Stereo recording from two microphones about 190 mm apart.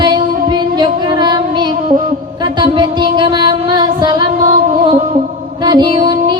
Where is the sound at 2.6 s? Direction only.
25° right (ahead or behind).